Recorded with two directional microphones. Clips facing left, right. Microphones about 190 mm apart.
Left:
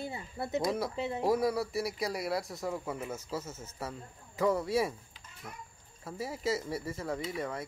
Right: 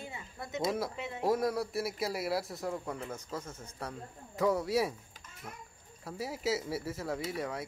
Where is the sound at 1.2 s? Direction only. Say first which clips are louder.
Left 1 dB; centre (ahead or behind).